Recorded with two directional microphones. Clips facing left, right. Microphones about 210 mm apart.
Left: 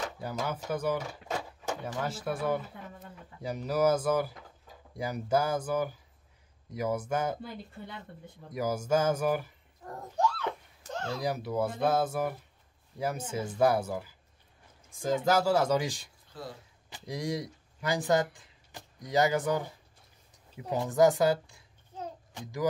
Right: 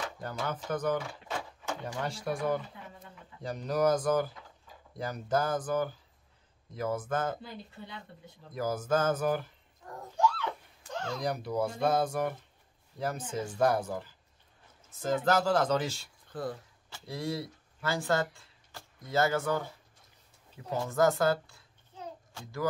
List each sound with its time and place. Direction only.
0.2 s speech: 10° left (ahead or behind)
8.5 s speech: 10° left (ahead or behind)
10.1 s a sound: 40° left (ahead or behind)
11.1 s speech: 5° left (ahead or behind)
16.3 s dog: 55° right (ahead or behind)
16.9 s a child's voice: 15° left (ahead or behind)